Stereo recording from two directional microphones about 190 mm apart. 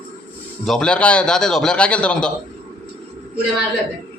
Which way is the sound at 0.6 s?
5° left (ahead or behind).